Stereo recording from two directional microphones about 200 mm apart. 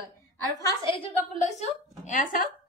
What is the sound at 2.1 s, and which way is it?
Speech, 45° left (ahead or behind).